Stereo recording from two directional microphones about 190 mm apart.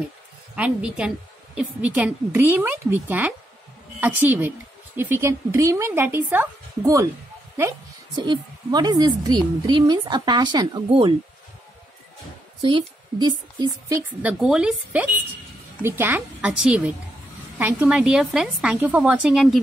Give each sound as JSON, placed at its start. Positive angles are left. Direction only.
{"t": 0.6, "sound": "a woman's voice", "side_deg": -5}
{"t": 12.6, "sound": "a woman's voice", "side_deg": -25}
{"t": 14.4, "sound": "a woman's voice", "side_deg": -5}